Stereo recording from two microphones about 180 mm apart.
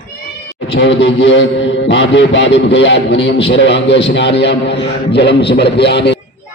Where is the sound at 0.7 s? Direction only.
90° left.